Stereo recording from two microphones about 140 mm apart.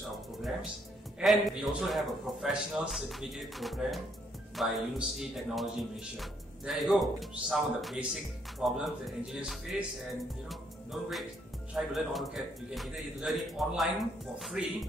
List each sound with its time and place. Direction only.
1.2 s a man's voice: centre (ahead or behind)
10.5 s music: centre (ahead or behind)
11.7 s a man's voice: centre (ahead or behind)